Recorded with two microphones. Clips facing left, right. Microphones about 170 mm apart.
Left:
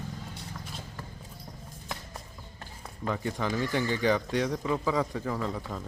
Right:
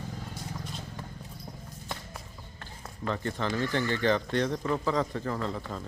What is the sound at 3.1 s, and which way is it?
Speech, 10° left (ahead or behind).